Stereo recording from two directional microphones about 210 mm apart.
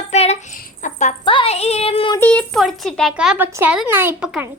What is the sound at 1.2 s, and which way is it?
Music, 25° left (ahead or behind).